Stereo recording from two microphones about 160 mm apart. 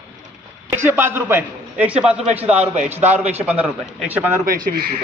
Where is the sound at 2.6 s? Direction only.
45° right (ahead or behind).